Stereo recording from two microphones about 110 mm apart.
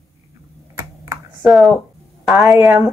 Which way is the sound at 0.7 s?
30° right (ahead or behind).